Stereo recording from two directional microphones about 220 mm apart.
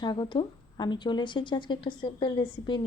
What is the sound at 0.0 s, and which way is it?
A woman's voice, 20° left (ahead or behind).